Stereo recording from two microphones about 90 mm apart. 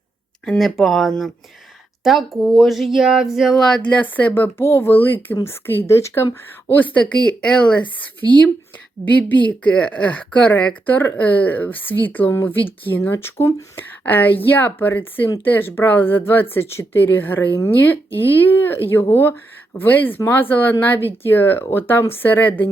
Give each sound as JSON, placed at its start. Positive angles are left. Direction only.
{"t": 0.4, "sound": "speech", "side_deg": 5}
{"t": 6.7, "sound": "speech", "side_deg": 20}
{"t": 9.5, "sound": "speech", "side_deg": 15}
{"t": 14.0, "sound": "speech", "side_deg": 20}